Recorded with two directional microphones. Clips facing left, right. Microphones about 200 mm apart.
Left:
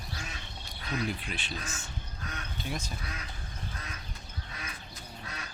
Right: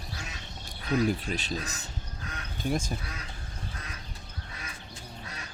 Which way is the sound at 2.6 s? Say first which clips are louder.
Right 8 dB; 50° right (ahead or behind).